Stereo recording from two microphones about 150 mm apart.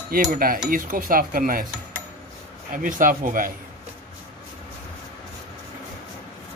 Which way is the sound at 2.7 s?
65° right (ahead or behind).